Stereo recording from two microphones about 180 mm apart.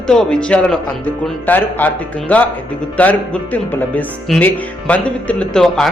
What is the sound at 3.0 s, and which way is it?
Speech, 10° left (ahead or behind).